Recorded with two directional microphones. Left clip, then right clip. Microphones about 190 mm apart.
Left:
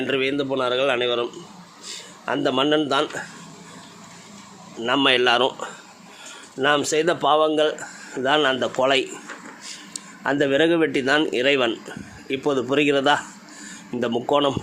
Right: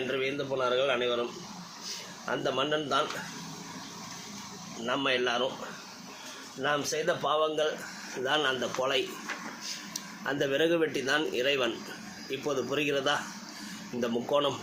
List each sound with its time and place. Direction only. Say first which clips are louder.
0.1 s speech: left 11 dB; 55° left (ahead or behind)
4.9 s speech: left 11 dB; 55° left (ahead or behind)
6.6 s speech: left 10 dB; 60° left (ahead or behind)
10.2 s speech: left 9 dB; 50° left (ahead or behind)